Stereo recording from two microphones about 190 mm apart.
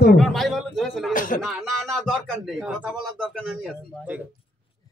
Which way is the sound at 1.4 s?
Centre (ahead or behind).